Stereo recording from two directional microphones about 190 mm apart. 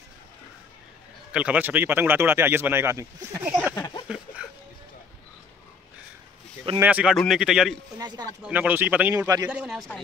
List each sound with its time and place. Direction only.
1.3 s speech: 5° right (ahead or behind)
3.7 s a sound: 15° left (ahead or behind)
6.8 s speech: 5° right (ahead or behind)
8.0 s speech: 20° right (ahead or behind)
8.4 s speech: 10° right (ahead or behind)
9.5 s speech: 5° right (ahead or behind)